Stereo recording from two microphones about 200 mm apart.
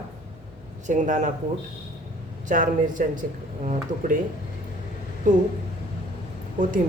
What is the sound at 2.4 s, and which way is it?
Speech, 40° right (ahead or behind).